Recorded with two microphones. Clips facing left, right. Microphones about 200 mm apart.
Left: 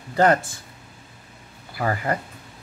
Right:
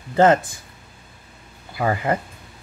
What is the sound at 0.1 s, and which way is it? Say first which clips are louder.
Speech: right 3 dB; 25° right (ahead or behind).